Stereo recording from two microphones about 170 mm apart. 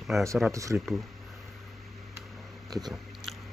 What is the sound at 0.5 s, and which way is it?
Speech, 20° right (ahead or behind).